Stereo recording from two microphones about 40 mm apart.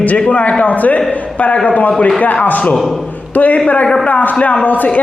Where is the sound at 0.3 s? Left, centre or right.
Left.